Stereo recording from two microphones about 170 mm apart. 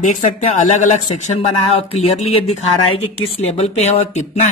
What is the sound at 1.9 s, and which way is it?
Speech, 35° left (ahead or behind).